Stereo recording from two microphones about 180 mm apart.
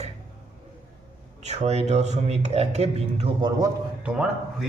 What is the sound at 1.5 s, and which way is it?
Speech, 40° right (ahead or behind).